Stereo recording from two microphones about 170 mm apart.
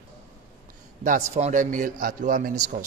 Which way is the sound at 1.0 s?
45° right (ahead or behind).